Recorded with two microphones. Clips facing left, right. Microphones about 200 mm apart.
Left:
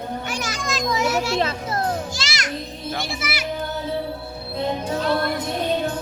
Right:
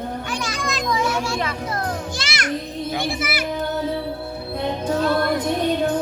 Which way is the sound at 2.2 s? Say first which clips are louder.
Right 3 dB; 55° right (ahead or behind).